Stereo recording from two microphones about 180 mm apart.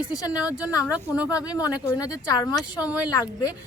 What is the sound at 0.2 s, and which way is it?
Speech, 20° left (ahead or behind).